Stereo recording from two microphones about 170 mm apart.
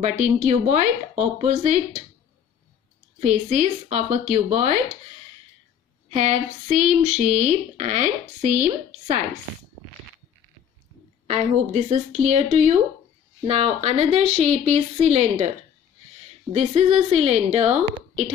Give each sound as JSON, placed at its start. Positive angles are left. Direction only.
{"t": 0.2, "sound": "speech", "side_deg": -45}
{"t": 3.2, "sound": "speech", "side_deg": -40}
{"t": 6.0, "sound": "speech", "side_deg": -45}
{"t": 11.2, "sound": "a woman's voice", "side_deg": -40}
{"t": 16.5, "sound": "a woman's voice", "side_deg": -40}